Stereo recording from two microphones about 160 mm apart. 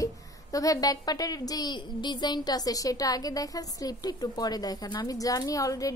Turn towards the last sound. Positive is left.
turn(degrees=20)  # may be behind; listen again after turning